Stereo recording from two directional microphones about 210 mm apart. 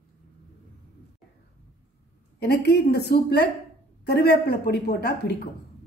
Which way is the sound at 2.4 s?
50° left (ahead or behind).